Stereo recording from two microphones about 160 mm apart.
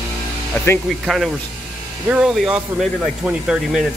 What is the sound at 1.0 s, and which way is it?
Speech, centre (ahead or behind).